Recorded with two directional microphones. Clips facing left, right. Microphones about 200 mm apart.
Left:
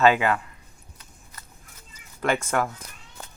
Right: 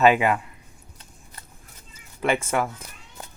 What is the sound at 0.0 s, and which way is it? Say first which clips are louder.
Speech: right 1 dB; 15° right (ahead or behind).